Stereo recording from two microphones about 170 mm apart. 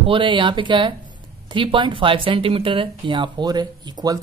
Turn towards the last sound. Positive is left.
turn(degrees=-20)  # may be behind; listen again after turning